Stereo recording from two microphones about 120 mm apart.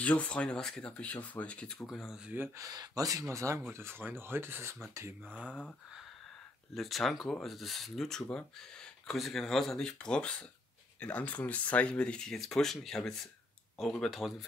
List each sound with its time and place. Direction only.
0.0 s speech: 10° left (ahead or behind)
2.3 s speech: 15° right (ahead or behind)
2.6 s speech: 30° right (ahead or behind)
6.7 s speech: centre (ahead or behind)